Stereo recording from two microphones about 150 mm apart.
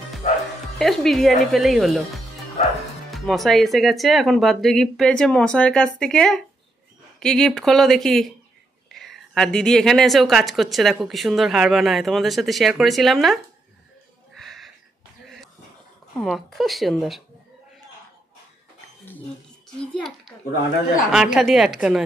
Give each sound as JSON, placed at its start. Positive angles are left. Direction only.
{"t": 0.2, "sound": "music", "side_deg": 50}
{"t": 0.7, "sound": "a woman's voice", "side_deg": 0}
{"t": 14.4, "sound": "a sound", "side_deg": 0}
{"t": 16.3, "sound": "a woman's voice", "side_deg": 0}
{"t": 19.9, "sound": "a woman's voice", "side_deg": 5}